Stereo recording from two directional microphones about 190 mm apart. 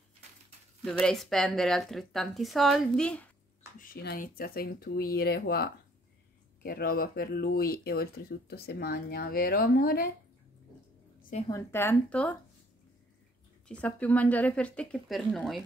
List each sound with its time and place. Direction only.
1.0 s speech: centre (ahead or behind)
3.8 s speech: 50° left (ahead or behind)
11.4 s speech: 15° left (ahead or behind)
13.7 s speech: 5° left (ahead or behind)